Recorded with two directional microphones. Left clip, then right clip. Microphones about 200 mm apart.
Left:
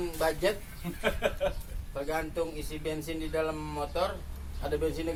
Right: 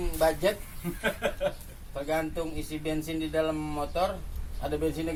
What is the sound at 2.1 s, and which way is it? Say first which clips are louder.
A man's voice: right 2 dB; 20° left (ahead or behind).